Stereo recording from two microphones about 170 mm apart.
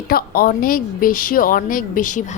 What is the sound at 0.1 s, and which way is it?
A woman's voice, 60° left (ahead or behind).